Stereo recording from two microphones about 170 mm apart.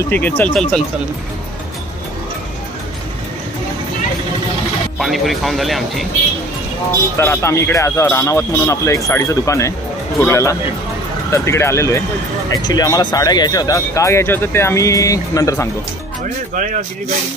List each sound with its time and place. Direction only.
0.1 s speech: 10° left (ahead or behind)
4.9 s speech: centre (ahead or behind)
7.2 s speech: 15° left (ahead or behind)